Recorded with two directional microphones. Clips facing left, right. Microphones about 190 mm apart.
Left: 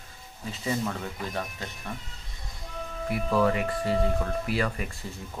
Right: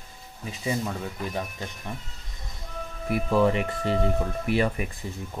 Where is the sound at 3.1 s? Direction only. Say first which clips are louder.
Right 3 dB; 25° right (ahead or behind).